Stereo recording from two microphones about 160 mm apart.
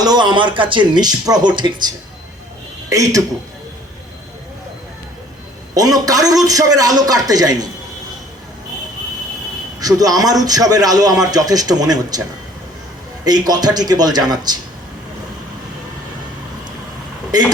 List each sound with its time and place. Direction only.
0.0 s a man's voice: 25° right (ahead or behind)
2.9 s a man's voice: 20° right (ahead or behind)
5.7 s a man's voice: 25° right (ahead or behind)
9.8 s a man's voice: 25° right (ahead or behind)
13.2 s a man's voice: 25° right (ahead or behind)